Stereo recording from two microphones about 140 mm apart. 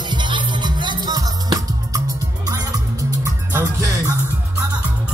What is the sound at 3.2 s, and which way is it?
Music, 20° right (ahead or behind).